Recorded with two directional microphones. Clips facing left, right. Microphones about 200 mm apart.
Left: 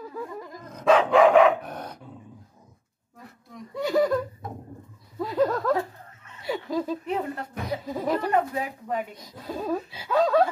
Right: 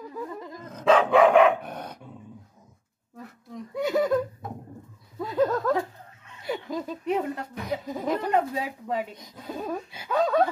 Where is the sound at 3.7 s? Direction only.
5° right (ahead or behind).